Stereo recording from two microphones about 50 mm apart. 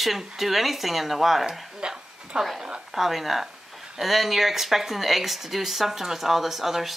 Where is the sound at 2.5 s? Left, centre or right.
Centre.